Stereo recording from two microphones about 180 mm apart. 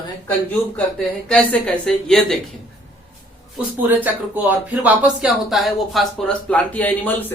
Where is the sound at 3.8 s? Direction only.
10° right (ahead or behind).